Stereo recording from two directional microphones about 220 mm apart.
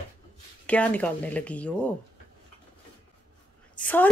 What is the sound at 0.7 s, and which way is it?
Speech, 5° left (ahead or behind).